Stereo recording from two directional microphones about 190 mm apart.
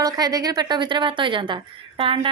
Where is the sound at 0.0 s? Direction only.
20° right (ahead or behind).